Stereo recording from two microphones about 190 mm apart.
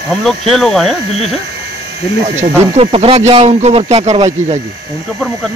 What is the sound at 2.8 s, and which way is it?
Speech, 30° right (ahead or behind).